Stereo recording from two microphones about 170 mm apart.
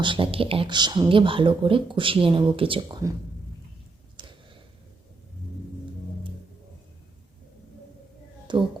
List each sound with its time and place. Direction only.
0.0 s speech: 30° right (ahead or behind)
4.2 s a sound: 30° right (ahead or behind)
8.5 s speech: 25° right (ahead or behind)